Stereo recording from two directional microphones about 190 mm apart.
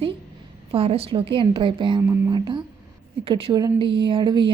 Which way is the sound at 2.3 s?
25° right (ahead or behind).